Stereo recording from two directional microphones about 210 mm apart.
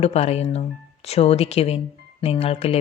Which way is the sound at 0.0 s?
30° left (ahead or behind).